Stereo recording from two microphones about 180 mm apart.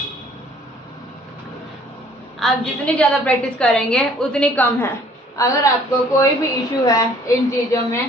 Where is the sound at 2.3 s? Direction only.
5° left (ahead or behind).